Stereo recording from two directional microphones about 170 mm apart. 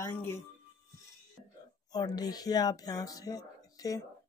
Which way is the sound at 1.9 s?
25° left (ahead or behind).